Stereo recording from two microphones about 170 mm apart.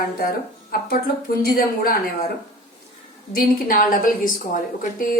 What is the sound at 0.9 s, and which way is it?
A woman's voice, 60° left (ahead or behind).